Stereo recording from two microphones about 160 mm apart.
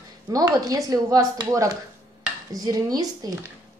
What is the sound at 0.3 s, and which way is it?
Speech, 25° right (ahead or behind).